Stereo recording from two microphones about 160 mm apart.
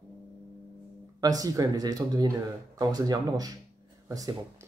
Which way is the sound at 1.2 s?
25° right (ahead or behind).